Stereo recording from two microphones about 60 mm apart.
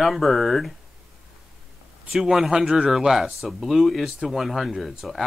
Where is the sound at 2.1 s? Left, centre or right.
Centre.